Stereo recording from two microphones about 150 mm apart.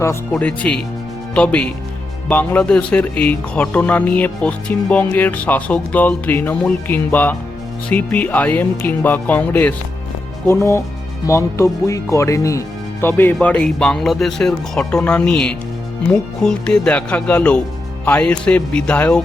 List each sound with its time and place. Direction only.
0.0 s speech: 15° left (ahead or behind)